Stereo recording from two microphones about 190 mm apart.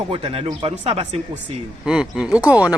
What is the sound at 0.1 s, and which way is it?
Speech, 30° right (ahead or behind).